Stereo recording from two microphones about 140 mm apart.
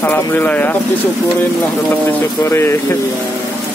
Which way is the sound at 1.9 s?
15° left (ahead or behind).